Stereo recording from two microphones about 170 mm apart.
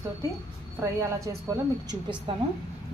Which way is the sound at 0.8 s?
20° right (ahead or behind).